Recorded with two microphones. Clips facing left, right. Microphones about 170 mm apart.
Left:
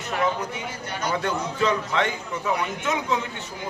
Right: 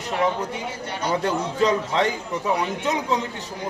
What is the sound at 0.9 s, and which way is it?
A man's voice, 30° right (ahead or behind).